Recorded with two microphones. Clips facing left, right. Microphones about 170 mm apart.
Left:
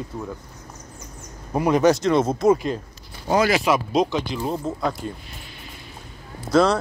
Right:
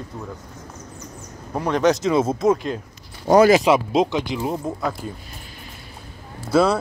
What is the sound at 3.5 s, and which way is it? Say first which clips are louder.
Speech: right 4 dB; 25° right (ahead or behind).